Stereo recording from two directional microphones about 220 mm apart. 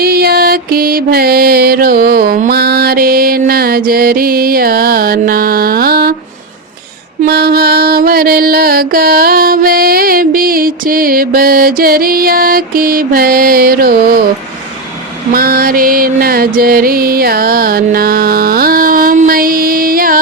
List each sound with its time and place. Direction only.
0.0 s mantra: 45° right (ahead or behind)
7.2 s mantra: 45° right (ahead or behind)
15.3 s music: 40° right (ahead or behind)